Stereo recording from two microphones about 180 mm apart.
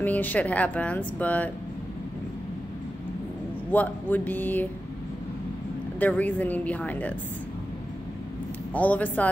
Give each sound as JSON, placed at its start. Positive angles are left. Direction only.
{"t": 0.0, "sound": "speech", "side_deg": 10}
{"t": 3.7, "sound": "speech", "side_deg": 10}
{"t": 5.9, "sound": "speech", "side_deg": 10}
{"t": 8.7, "sound": "speech", "side_deg": 10}